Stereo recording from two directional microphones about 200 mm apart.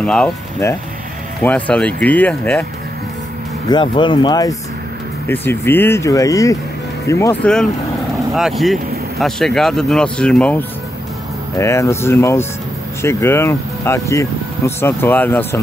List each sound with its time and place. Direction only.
0.0 s speech: 5° left (ahead or behind)
3.6 s speech: 25° left (ahead or behind)
8.4 s speech: centre (ahead or behind)